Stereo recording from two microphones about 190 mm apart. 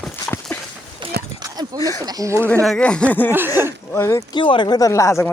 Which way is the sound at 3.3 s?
10° right (ahead or behind).